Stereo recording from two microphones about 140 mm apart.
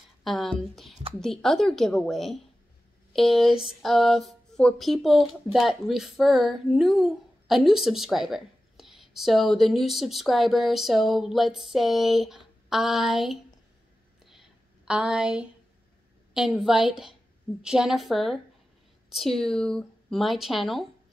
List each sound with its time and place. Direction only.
0.2 s a woman's voice: centre (ahead or behind)
14.2 s a sound: centre (ahead or behind)
16.3 s speech: 5° right (ahead or behind)